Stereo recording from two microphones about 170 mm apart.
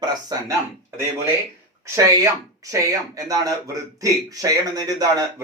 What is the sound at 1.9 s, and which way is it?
Speech, 20° right (ahead or behind).